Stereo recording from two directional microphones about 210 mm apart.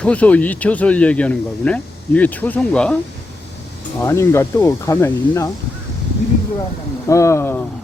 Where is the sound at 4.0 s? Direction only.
10° left (ahead or behind).